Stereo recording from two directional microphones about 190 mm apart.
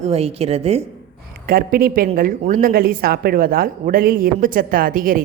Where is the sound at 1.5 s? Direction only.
50° right (ahead or behind).